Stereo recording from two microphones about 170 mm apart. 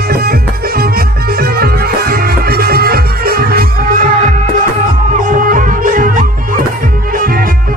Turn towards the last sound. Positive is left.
turn(degrees=-50)  # may be behind; listen again after turning